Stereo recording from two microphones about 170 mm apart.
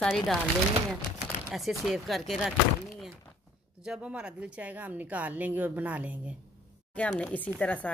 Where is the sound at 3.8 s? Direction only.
5° right (ahead or behind).